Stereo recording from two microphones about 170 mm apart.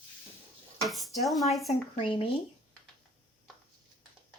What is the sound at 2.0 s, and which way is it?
Speech, 35° left (ahead or behind).